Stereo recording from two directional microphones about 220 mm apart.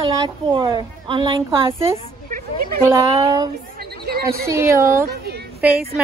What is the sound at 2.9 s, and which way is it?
Speech, 15° right (ahead or behind).